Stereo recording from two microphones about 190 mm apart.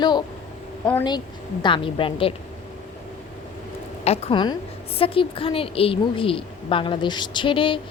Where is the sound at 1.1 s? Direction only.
25° left (ahead or behind).